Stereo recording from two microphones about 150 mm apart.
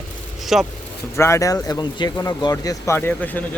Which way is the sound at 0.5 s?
Centre (ahead or behind).